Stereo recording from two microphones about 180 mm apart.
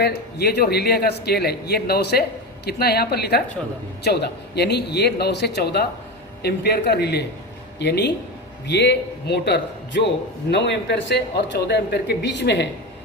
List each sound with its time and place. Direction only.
0.0 s speech: 65° left (ahead or behind)